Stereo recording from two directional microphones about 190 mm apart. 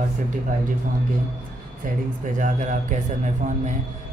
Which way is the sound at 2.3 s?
40° right (ahead or behind).